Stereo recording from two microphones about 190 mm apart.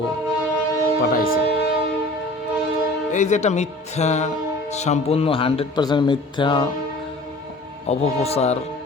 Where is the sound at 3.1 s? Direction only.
40° left (ahead or behind).